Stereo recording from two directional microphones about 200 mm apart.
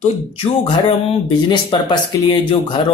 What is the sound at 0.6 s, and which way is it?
A man's voice, 25° left (ahead or behind).